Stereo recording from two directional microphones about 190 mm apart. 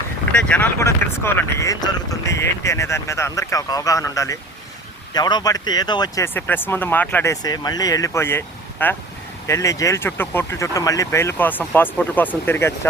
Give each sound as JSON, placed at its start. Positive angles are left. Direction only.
{"t": 0.3, "sound": "speech", "side_deg": 5}